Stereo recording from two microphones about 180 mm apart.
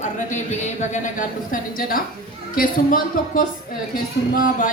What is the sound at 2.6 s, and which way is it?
A woman's voice, 50° left (ahead or behind).